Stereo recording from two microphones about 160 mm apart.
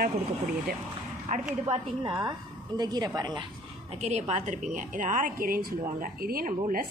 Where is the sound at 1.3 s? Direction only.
50° right (ahead or behind).